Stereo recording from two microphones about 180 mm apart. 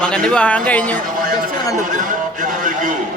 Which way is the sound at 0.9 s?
50° right (ahead or behind).